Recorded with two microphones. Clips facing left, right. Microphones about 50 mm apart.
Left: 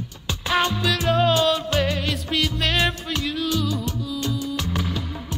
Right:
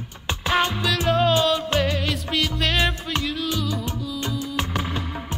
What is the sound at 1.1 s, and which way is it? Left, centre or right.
Music, centre.